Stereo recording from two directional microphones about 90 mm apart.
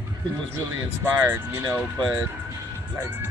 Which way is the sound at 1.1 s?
25° right (ahead or behind).